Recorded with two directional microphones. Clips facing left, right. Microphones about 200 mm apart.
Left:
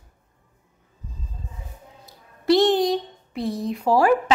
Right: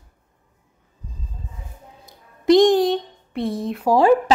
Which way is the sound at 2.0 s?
20° right (ahead or behind).